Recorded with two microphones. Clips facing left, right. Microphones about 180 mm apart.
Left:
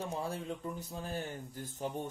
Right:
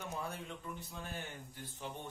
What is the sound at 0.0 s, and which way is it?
Speech, 30° left (ahead or behind).